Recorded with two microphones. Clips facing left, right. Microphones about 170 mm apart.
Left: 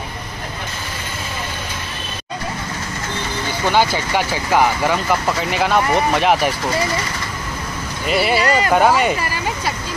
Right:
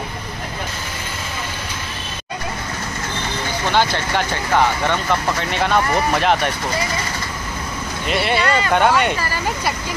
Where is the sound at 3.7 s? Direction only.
10° left (ahead or behind).